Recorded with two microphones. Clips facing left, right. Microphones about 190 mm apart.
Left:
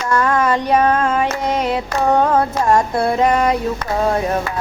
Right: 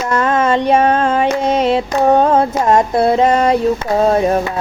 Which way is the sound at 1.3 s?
25° right (ahead or behind).